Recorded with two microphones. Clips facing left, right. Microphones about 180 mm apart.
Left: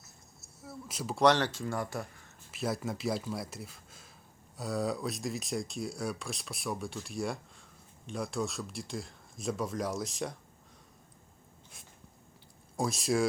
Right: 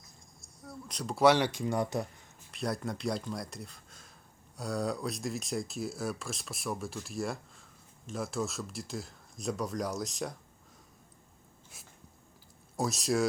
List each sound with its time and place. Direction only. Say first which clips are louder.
0.0 s a sound: even; 5° left (ahead or behind)
1.2 s speech: right 1 dB; 10° right (ahead or behind)
2.5 s speech: even; 5° left (ahead or behind)
12.7 s speech: even; centre (ahead or behind)